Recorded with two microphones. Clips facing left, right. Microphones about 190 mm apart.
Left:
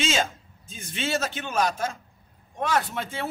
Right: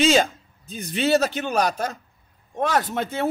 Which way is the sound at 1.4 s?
40° right (ahead or behind).